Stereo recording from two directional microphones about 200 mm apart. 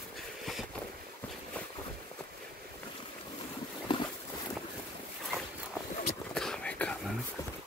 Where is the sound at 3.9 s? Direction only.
25° left (ahead or behind).